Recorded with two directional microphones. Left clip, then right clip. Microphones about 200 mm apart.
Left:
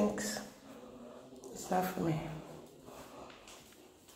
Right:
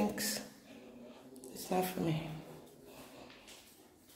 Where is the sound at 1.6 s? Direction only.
15° right (ahead or behind).